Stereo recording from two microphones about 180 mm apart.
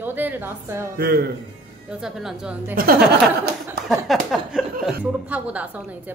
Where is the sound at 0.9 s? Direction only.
60° right (ahead or behind).